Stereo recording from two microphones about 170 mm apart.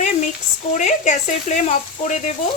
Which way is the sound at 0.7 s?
45° left (ahead or behind).